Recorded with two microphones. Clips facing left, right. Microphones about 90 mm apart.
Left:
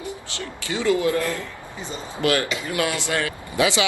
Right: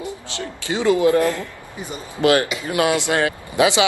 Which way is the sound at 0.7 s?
20° right (ahead or behind).